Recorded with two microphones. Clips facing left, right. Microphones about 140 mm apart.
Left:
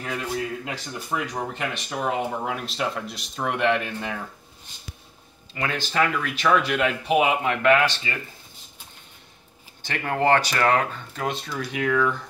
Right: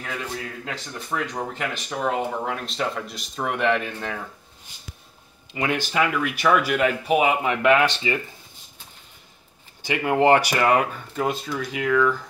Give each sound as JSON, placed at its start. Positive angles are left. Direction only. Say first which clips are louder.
{"t": 0.7, "sound": "speech", "louder": "left 1 dB", "side_deg": 10}
{"t": 5.5, "sound": "speech", "louder": "right 3 dB", "side_deg": -15}
{"t": 7.6, "sound": "speech", "louder": "right 1 dB", "side_deg": -15}
{"t": 9.8, "sound": "speech", "louder": "right 4 dB", "side_deg": -15}